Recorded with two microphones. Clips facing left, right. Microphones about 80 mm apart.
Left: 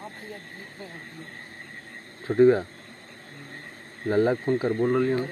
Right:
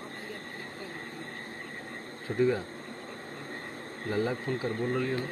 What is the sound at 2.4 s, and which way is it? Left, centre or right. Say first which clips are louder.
Speech: left 9 dB; left.